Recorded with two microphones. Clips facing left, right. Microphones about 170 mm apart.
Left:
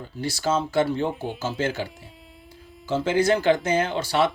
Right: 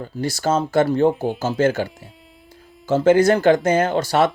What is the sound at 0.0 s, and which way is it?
Speech, 45° right (ahead or behind).